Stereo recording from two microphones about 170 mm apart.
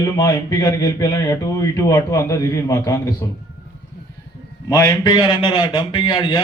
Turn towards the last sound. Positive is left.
turn(degrees=25)  # may be behind; listen again after turning